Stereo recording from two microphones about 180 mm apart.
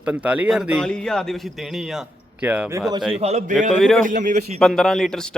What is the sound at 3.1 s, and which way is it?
A man's voice, 35° right (ahead or behind).